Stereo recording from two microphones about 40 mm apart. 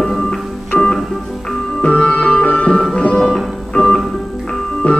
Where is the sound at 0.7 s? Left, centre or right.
Left.